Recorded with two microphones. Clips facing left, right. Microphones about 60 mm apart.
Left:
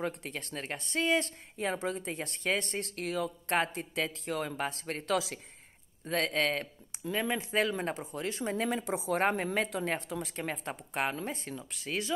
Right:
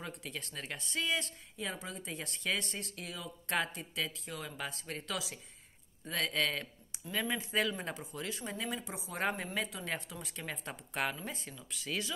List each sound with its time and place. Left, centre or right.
0.0 s speech: left
6.0 s speech: left
8.8 s speech: left
9.2 s speech: left
10.3 s speech: left
11.2 s speech: left